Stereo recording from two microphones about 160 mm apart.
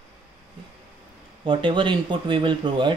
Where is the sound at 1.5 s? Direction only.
30° right (ahead or behind).